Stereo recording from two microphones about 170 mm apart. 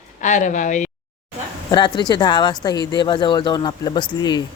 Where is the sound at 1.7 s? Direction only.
25° left (ahead or behind).